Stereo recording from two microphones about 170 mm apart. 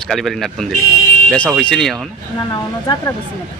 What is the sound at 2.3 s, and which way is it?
Speech, 25° left (ahead or behind).